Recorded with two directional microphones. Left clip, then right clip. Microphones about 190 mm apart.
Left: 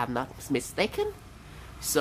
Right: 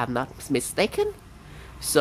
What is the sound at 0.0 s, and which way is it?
Speech, 20° right (ahead or behind).